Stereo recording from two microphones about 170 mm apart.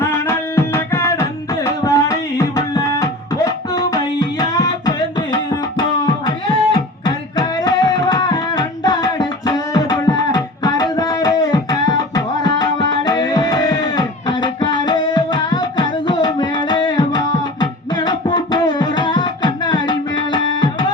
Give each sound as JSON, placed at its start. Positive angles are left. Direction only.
{"t": 0.0, "sound": "music", "side_deg": 15}
{"t": 6.2, "sound": "beatboxing", "side_deg": 25}